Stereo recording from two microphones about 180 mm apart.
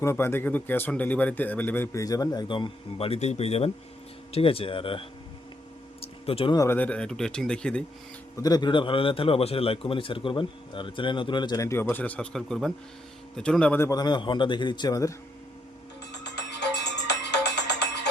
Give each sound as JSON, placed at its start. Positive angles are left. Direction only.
{"t": 0.0, "sound": "speech", "side_deg": 15}
{"t": 6.0, "sound": "a sound", "side_deg": 30}
{"t": 6.7, "sound": "speech", "side_deg": 10}
{"t": 8.4, "sound": "a man's voice", "side_deg": 20}
{"t": 16.2, "sound": "music", "side_deg": 70}